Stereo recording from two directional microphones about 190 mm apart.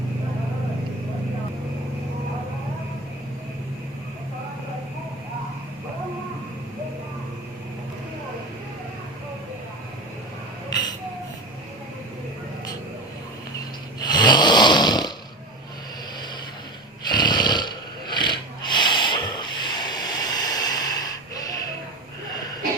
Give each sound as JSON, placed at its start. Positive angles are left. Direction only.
{"t": 10.7, "sound": "a sound", "side_deg": 20}
{"t": 14.0, "sound": "snoring", "side_deg": 25}
{"t": 17.1, "sound": "snoring", "side_deg": 20}